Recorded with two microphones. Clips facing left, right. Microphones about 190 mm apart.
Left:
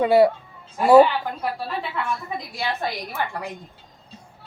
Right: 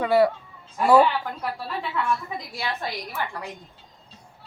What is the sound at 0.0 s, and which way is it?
A woman's voice, 25° left (ahead or behind).